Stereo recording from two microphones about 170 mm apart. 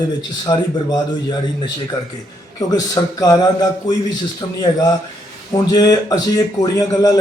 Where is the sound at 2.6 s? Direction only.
20° left (ahead or behind).